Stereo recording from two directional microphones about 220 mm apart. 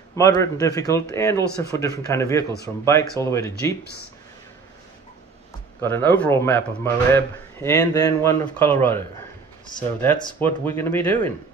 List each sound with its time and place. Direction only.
0.1 s speech: 15° left (ahead or behind)
5.8 s speech: 10° left (ahead or behind)
10.4 s speech: 10° left (ahead or behind)